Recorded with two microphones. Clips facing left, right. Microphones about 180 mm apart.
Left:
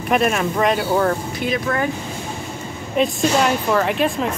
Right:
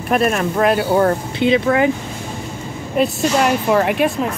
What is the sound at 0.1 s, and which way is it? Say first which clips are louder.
Speech: right 2 dB; centre (ahead or behind).